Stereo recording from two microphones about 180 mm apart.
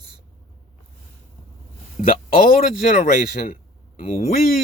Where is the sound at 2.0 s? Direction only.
55° left (ahead or behind).